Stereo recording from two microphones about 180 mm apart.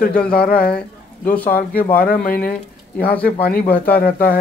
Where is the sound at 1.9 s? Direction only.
55° left (ahead or behind).